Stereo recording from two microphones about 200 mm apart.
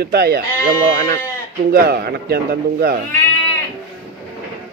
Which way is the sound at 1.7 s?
50° right (ahead or behind).